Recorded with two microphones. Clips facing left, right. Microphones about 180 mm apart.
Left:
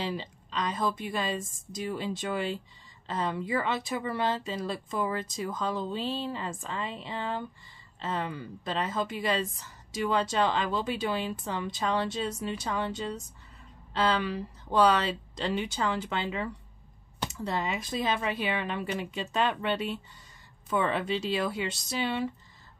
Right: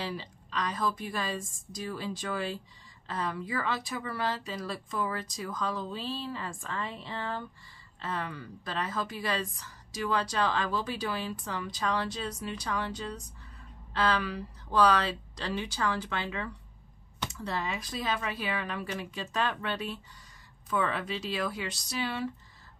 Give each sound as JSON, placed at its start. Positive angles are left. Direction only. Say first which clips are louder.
{"t": 0.0, "sound": "speech", "louder": "left 3 dB", "side_deg": 20}